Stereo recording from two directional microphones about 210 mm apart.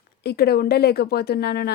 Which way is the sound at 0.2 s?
50° left (ahead or behind).